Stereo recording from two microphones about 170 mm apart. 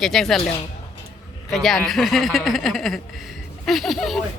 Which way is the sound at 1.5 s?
Centre (ahead or behind).